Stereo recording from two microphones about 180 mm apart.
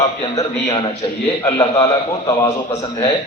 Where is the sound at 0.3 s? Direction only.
25° left (ahead or behind).